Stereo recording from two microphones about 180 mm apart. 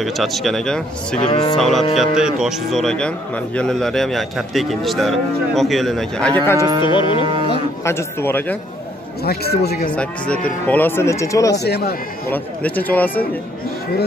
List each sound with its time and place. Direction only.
0.0 s speech: centre (ahead or behind)
1.3 s music: 25° left (ahead or behind)
1.6 s speech: centre (ahead or behind)
6.8 s music: 30° left (ahead or behind)
7.8 s speech: 15° left (ahead or behind)
9.2 s a man's voice: 60° left (ahead or behind)
9.8 s speech: 5° left (ahead or behind)
11.5 s a man's voice: 65° left (ahead or behind)
12.3 s speech: 10° left (ahead or behind)